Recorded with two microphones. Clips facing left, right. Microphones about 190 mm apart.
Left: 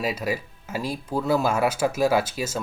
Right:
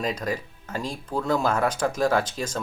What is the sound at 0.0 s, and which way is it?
Speech, 5° left (ahead or behind).